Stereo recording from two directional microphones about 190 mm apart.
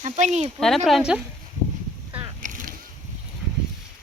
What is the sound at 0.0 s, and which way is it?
Speech, 35° right (ahead or behind).